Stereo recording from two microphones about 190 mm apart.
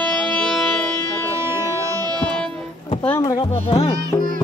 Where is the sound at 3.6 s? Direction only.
30° left (ahead or behind).